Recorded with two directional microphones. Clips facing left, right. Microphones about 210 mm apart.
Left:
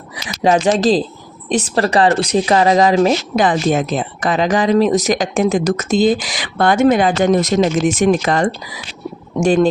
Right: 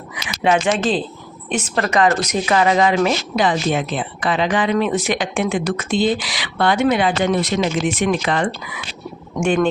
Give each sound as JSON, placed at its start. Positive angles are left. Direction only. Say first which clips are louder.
{"t": 0.4, "sound": "speech", "louder": "left 4 dB", "side_deg": 40}